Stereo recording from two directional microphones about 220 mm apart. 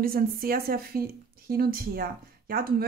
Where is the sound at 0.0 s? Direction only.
40° right (ahead or behind).